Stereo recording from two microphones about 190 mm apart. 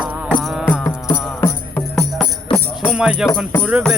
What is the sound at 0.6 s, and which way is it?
Music, 10° left (ahead or behind).